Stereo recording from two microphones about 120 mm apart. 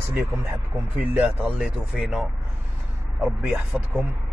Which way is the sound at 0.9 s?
10° right (ahead or behind).